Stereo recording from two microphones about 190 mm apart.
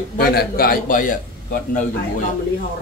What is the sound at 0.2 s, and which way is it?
A man's voice, 55° left (ahead or behind).